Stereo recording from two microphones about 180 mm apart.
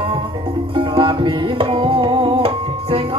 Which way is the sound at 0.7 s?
30° right (ahead or behind).